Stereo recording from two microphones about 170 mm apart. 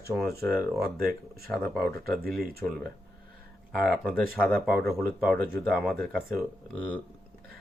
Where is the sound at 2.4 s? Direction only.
65° right (ahead or behind).